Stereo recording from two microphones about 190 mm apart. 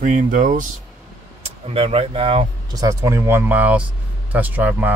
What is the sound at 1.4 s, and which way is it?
Speech, 30° right (ahead or behind).